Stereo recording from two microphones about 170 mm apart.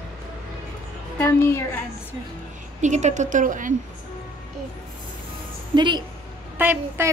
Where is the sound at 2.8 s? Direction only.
45° right (ahead or behind).